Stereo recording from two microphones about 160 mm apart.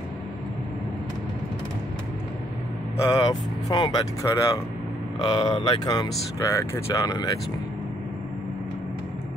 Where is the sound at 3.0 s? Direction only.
25° left (ahead or behind).